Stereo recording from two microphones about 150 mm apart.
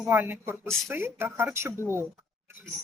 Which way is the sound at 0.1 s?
15° right (ahead or behind).